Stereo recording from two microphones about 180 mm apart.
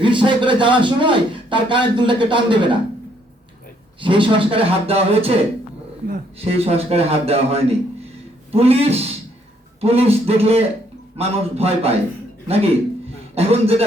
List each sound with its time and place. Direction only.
0.0 s speech: 25° right (ahead or behind)
4.0 s speech: 30° right (ahead or behind)
6.4 s a man's voice: 35° right (ahead or behind)